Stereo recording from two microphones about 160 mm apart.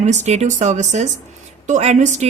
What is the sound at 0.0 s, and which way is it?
A woman's voice, 45° right (ahead or behind).